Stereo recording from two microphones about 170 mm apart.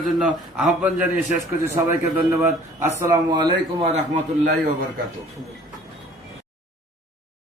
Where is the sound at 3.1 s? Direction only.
25° right (ahead or behind).